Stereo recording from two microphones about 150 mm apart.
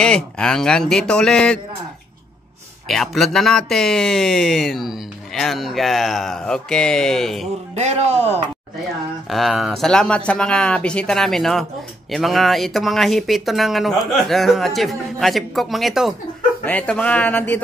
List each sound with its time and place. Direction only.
0.0 s speech: 5° left (ahead or behind)
2.9 s speech: centre (ahead or behind)
7.7 s a man's voice: 45° right (ahead or behind)
9.3 s speech: centre (ahead or behind)